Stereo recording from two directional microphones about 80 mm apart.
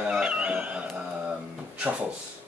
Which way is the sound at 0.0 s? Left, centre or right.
Centre.